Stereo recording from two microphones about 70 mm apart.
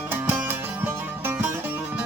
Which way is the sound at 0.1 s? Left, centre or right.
Right.